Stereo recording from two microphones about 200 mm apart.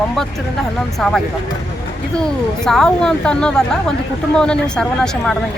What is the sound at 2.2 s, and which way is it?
Speech, centre (ahead or behind).